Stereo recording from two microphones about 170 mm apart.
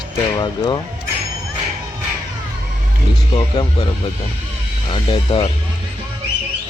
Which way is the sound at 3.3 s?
30° left (ahead or behind).